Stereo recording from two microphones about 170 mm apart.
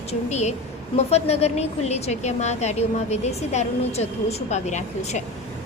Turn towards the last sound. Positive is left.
turn(degrees=45)  # may be behind; listen again after turning